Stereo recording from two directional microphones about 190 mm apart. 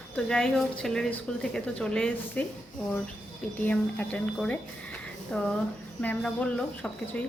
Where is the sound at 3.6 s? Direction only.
10° left (ahead or behind).